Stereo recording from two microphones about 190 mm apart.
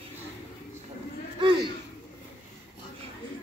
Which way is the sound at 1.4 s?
25° right (ahead or behind).